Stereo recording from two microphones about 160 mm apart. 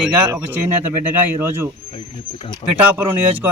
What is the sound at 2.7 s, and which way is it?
Speech, 10° right (ahead or behind).